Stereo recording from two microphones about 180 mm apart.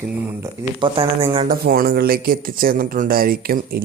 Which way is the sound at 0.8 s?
30° right (ahead or behind).